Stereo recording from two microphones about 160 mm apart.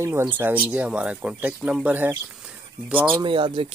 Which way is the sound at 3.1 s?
30° right (ahead or behind).